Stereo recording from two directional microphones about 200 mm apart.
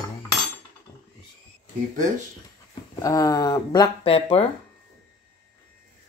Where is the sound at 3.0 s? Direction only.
15° left (ahead or behind).